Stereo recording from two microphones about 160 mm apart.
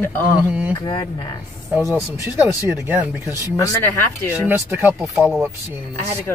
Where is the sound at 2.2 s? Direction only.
15° right (ahead or behind).